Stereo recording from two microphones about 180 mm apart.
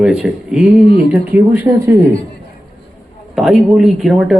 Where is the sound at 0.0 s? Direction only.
5° right (ahead or behind).